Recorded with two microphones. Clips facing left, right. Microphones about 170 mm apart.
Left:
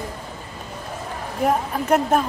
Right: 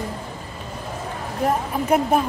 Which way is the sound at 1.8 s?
10° right (ahead or behind).